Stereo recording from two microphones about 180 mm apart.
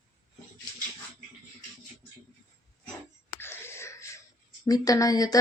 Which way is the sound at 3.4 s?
15° left (ahead or behind).